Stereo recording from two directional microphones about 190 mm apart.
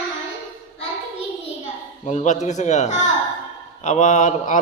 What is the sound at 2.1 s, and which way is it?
A man's voice, 35° left (ahead or behind).